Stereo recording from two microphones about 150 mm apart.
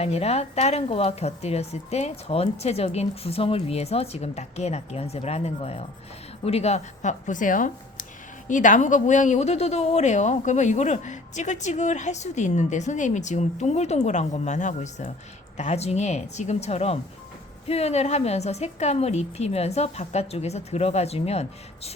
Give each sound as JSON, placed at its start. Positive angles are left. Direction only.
{"t": 0.0, "sound": "speech", "side_deg": 45}